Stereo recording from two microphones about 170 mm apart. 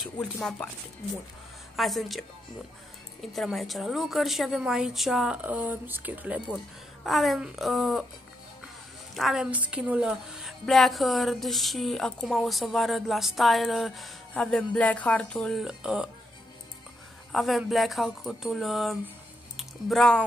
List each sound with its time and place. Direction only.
0.0 s a woman's voice: 5° left (ahead or behind)
1.8 s a woman's voice: centre (ahead or behind)
9.1 s a woman's voice: centre (ahead or behind)
17.3 s a woman's voice: centre (ahead or behind)
19.5 s a sound: centre (ahead or behind)